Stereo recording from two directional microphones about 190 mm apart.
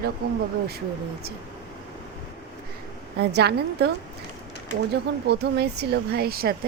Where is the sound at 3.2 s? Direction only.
60° right (ahead or behind).